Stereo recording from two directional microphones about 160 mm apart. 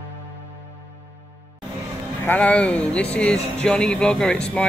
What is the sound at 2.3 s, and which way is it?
A man's voice, 5° left (ahead or behind).